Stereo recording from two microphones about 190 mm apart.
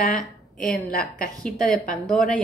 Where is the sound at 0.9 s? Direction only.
50° left (ahead or behind).